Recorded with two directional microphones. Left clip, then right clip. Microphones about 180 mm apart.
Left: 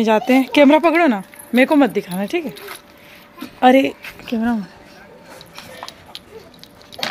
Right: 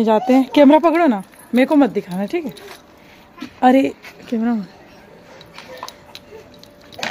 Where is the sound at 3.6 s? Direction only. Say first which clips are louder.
Left 1 dB; centre (ahead or behind).